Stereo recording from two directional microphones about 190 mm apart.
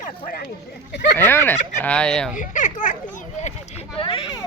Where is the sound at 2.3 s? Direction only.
45° left (ahead or behind).